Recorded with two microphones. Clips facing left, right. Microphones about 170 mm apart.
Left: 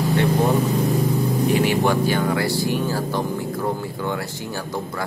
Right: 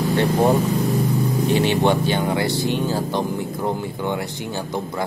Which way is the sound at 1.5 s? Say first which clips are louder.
Right 2 dB; 25° right (ahead or behind).